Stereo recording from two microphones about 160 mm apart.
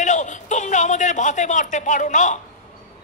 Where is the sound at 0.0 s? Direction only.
50° left (ahead or behind).